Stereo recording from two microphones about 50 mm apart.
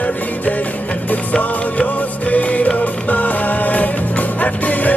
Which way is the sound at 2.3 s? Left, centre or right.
Left.